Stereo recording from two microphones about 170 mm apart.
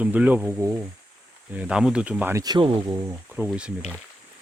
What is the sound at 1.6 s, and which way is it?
Speech, 5° right (ahead or behind).